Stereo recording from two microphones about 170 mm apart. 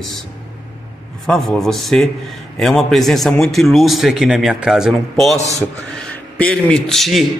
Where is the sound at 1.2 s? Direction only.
5° left (ahead or behind).